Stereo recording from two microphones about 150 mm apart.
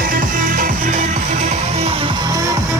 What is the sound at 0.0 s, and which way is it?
Music, 70° right (ahead or behind).